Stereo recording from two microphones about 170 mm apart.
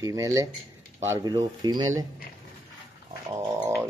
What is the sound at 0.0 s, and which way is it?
Speech, 20° right (ahead or behind).